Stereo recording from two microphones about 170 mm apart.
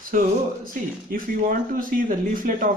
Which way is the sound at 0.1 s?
50° right (ahead or behind).